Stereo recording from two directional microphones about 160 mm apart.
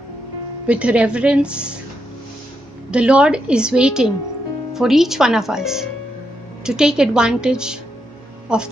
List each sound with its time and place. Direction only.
0.7 s a woman's voice: 10° right (ahead or behind)
2.9 s a woman's voice: 5° right (ahead or behind)